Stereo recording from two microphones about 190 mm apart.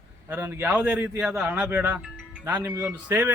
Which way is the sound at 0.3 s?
10° right (ahead or behind).